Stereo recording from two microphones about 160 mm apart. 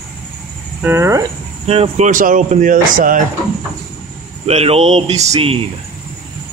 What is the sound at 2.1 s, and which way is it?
Speech, 55° right (ahead or behind).